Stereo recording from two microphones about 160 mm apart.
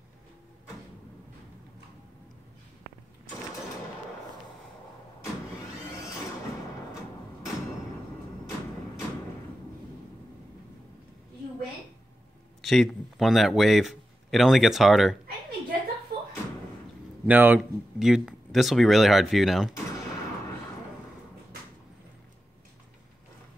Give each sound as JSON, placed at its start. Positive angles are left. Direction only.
{"t": 12.6, "sound": "speech", "side_deg": 0}
{"t": 17.3, "sound": "speech", "side_deg": -10}